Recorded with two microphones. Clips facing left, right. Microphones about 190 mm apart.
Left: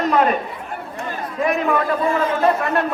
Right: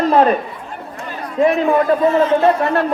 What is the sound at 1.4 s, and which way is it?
Speech, 30° right (ahead or behind).